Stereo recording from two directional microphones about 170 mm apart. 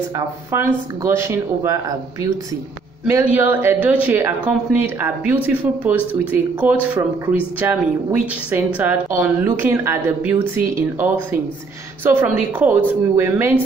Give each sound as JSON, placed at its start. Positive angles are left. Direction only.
{"t": 1.0, "sound": "speech", "side_deg": -15}